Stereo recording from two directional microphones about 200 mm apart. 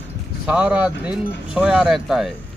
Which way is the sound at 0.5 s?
5° right (ahead or behind).